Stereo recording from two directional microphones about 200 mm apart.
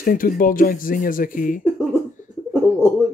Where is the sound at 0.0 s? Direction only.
45° left (ahead or behind).